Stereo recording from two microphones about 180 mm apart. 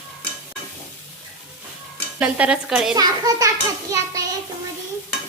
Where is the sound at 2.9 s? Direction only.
20° right (ahead or behind).